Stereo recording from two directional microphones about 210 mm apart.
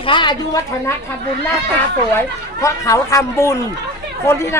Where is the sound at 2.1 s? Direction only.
15° left (ahead or behind).